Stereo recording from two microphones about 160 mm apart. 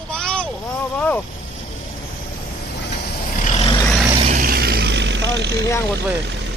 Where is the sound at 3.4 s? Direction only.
45° left (ahead or behind).